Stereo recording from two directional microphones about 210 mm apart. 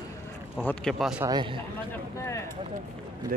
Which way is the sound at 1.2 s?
20° right (ahead or behind).